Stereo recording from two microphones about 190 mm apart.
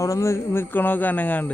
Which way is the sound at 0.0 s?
15° left (ahead or behind).